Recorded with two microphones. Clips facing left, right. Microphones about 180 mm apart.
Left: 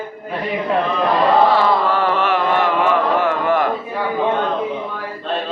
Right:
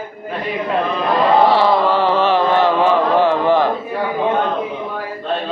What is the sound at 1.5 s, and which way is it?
Mantra, 30° right (ahead or behind).